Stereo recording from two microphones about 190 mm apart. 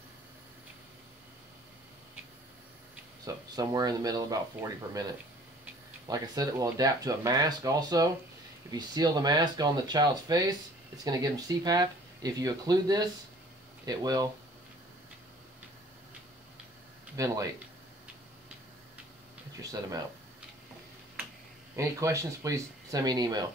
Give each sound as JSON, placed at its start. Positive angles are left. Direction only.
{"t": 3.5, "sound": "speech", "side_deg": -20}
{"t": 6.0, "sound": "speech", "side_deg": -20}
{"t": 17.2, "sound": "speech", "side_deg": -15}
{"t": 19.5, "sound": "speech", "side_deg": -20}
{"t": 21.7, "sound": "speech", "side_deg": -15}